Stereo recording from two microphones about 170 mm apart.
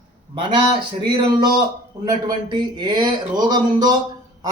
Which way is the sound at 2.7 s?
25° right (ahead or behind).